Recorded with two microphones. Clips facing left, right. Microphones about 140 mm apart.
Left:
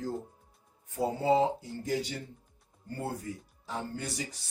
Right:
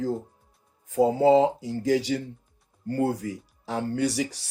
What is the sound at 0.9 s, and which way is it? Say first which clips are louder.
Speech: right 9 dB; 90° right.